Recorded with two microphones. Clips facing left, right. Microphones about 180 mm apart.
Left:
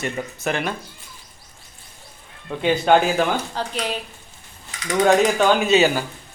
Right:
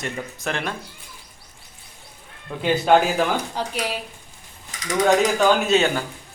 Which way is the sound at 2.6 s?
Centre (ahead or behind).